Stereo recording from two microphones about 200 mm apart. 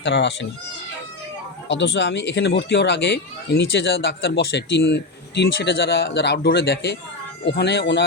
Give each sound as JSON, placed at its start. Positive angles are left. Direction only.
{"t": 0.0, "sound": "speech", "side_deg": 60}
{"t": 1.6, "sound": "speech", "side_deg": 65}